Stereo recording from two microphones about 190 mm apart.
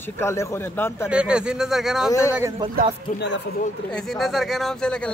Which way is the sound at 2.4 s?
20° right (ahead or behind).